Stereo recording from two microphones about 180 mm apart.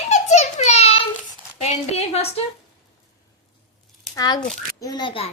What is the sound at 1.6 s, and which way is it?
Speech, 35° left (ahead or behind).